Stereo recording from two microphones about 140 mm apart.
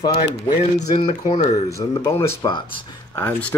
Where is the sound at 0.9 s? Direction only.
50° left (ahead or behind).